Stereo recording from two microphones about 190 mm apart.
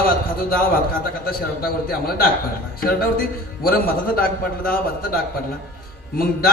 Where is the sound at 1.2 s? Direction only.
50° left (ahead or behind).